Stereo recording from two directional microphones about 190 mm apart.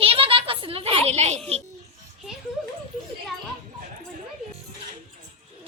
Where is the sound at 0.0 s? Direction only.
30° right (ahead or behind).